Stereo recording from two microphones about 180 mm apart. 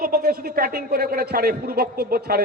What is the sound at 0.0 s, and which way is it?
Speech, 55° right (ahead or behind).